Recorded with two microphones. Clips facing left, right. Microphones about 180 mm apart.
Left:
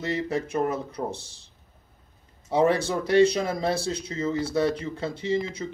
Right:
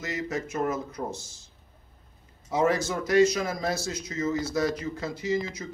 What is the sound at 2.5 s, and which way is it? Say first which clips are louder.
Speech: left 3 dB; 30° left (ahead or behind).